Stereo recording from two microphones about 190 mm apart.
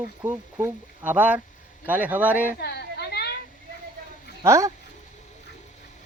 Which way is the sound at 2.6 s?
55° left (ahead or behind).